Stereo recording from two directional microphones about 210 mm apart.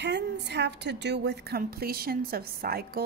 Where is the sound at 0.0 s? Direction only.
55° right (ahead or behind).